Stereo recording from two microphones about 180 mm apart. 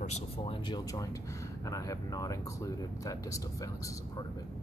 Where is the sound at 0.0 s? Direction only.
40° left (ahead or behind).